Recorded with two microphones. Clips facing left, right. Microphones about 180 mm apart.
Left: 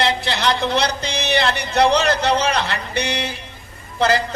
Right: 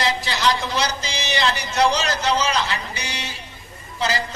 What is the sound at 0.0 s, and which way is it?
A man's voice, 60° left (ahead or behind).